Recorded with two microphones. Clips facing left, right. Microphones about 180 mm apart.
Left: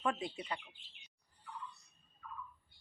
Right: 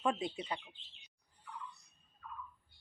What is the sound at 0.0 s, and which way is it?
Speech, 15° right (ahead or behind).